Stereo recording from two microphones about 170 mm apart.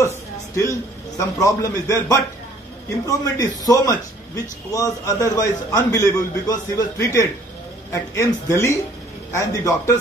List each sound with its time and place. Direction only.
0.0 s a man's voice: 15° left (ahead or behind)